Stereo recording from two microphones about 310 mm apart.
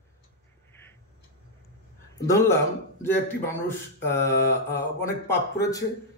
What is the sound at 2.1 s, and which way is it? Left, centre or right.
Speech, centre.